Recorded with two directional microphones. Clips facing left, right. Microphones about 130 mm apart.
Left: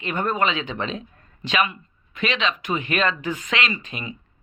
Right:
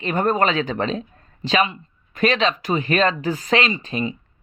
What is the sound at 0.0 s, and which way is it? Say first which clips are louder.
A man's voice: right 4 dB; 40° right (ahead or behind).